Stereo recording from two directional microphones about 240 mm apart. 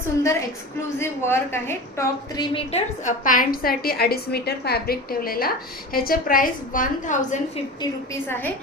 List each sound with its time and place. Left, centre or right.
0.2 s a woman's voice: centre; by 7.6 s left
7.8 s a woman's voice: centre